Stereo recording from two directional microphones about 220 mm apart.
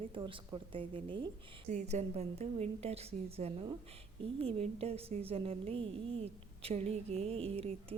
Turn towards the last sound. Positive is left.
turn(degrees=-25)  # may be behind; listen again after turning